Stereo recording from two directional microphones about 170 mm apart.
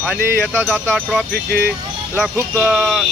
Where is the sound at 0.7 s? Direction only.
5° left (ahead or behind).